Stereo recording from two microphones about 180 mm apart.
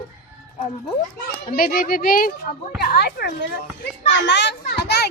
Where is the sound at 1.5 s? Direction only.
50° left (ahead or behind).